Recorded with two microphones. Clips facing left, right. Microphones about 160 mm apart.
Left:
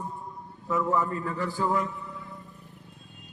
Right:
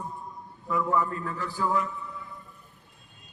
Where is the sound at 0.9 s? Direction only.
20° left (ahead or behind).